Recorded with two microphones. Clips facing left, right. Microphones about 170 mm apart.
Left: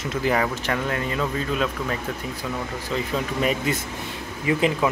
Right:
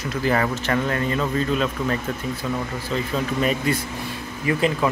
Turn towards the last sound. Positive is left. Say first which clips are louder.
# even
turn(degrees=15)  # may be behind; listen again after turning